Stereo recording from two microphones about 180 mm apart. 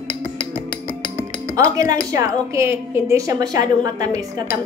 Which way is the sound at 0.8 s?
15° right (ahead or behind).